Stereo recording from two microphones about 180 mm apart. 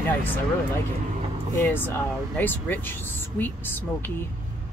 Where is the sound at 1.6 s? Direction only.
10° left (ahead or behind).